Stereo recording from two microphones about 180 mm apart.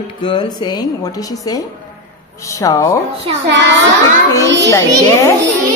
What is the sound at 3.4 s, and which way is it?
Speech, 75° right (ahead or behind).